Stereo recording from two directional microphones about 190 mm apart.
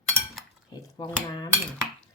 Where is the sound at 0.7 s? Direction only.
20° left (ahead or behind).